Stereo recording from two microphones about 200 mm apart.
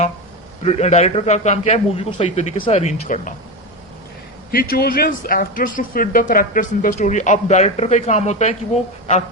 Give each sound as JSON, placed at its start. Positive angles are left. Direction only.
{"t": 0.6, "sound": "speech", "side_deg": 30}
{"t": 4.5, "sound": "speech", "side_deg": 45}